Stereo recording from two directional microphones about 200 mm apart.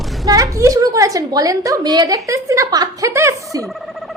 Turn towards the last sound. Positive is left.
turn(degrees=-15)  # may be behind; listen again after turning